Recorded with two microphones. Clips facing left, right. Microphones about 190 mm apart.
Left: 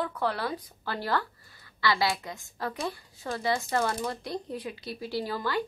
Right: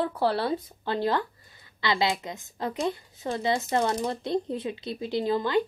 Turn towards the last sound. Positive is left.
turn(degrees=-20)  # may be behind; listen again after turning